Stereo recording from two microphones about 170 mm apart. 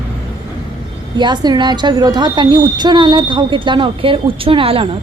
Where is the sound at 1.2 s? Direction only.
25° right (ahead or behind).